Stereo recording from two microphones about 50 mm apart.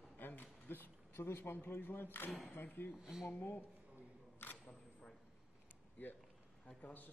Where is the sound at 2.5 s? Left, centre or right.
Left.